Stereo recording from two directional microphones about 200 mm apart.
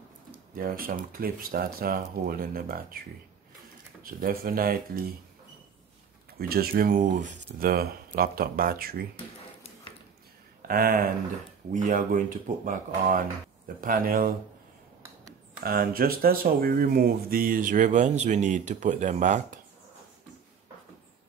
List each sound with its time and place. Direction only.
0.6 s speech: 45° right (ahead or behind)
6.3 s speech: 50° right (ahead or behind)
10.7 s speech: 45° right (ahead or behind)
15.6 s speech: 50° right (ahead or behind)